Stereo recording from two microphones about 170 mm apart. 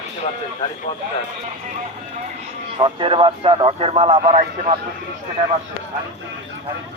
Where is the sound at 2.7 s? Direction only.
30° right (ahead or behind).